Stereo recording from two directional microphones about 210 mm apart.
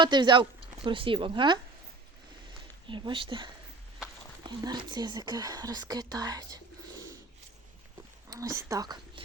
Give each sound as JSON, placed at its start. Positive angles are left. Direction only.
{"t": 0.0, "sound": "speech", "side_deg": -20}
{"t": 2.8, "sound": "speech", "side_deg": -25}
{"t": 8.3, "sound": "speech", "side_deg": -15}